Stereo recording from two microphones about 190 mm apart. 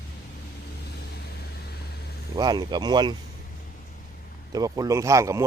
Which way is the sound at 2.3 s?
20° right (ahead or behind).